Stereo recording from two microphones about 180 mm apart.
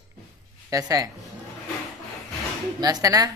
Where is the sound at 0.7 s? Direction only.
20° right (ahead or behind).